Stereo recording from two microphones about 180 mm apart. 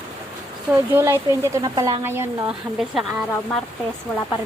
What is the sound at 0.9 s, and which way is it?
Speech, 15° right (ahead or behind).